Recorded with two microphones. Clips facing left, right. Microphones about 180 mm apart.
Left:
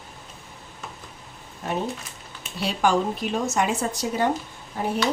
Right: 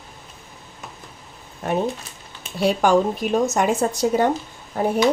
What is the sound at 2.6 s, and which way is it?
Speech, 50° right (ahead or behind).